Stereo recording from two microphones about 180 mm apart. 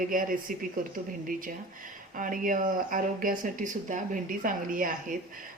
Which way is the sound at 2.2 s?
50° right (ahead or behind).